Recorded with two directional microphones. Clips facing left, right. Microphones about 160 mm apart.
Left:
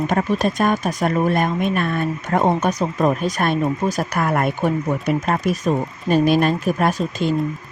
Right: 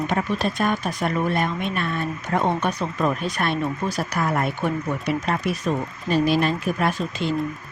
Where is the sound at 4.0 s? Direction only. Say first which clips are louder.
Left 3 dB; 55° left (ahead or behind).